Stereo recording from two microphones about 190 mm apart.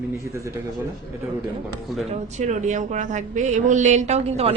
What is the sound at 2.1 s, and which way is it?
A man's voice, 40° right (ahead or behind).